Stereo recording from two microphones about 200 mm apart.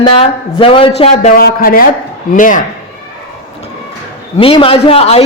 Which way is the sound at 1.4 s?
50° left (ahead or behind).